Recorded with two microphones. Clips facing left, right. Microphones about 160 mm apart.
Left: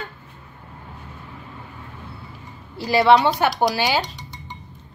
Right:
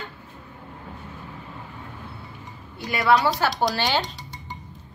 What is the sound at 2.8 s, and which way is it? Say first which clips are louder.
Speech: left 5 dB; 30° left (ahead or behind).